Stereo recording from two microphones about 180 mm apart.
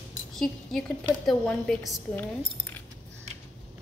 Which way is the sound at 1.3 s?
5° left (ahead or behind).